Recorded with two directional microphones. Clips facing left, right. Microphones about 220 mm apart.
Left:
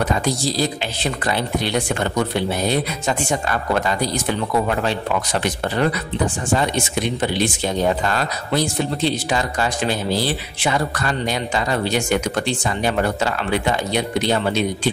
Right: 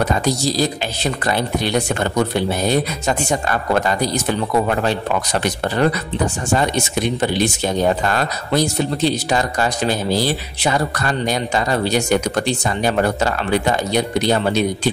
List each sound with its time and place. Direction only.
0.2 s speech: 40° right (ahead or behind)
7.2 s speech: 45° right (ahead or behind)